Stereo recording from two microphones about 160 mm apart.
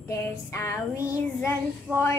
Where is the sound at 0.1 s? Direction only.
20° left (ahead or behind).